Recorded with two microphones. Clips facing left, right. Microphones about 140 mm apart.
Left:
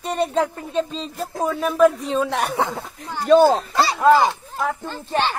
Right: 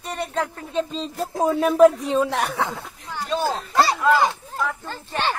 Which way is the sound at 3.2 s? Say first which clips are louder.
Left 11 dB; 55° left (ahead or behind).